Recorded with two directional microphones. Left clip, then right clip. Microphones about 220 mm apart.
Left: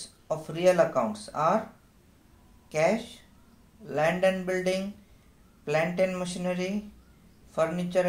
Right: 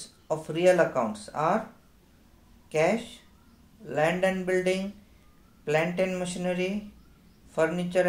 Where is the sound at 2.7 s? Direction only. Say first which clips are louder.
Even; 10° right (ahead or behind).